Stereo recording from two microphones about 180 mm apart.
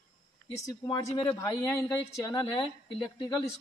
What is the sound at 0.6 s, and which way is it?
Speech, 20° left (ahead or behind).